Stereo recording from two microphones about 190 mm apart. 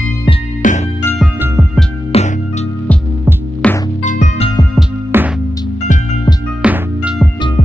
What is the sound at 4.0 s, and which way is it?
Music, 40° left (ahead or behind).